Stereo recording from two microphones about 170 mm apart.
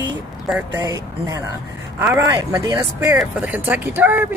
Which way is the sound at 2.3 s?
25° right (ahead or behind).